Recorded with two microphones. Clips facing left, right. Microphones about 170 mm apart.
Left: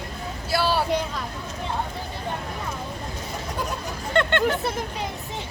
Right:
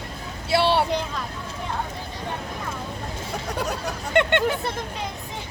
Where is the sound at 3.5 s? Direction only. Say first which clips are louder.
Right 2 dB; 70° right (ahead or behind).